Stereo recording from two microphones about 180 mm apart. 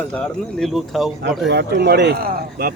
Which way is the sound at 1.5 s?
65° right (ahead or behind).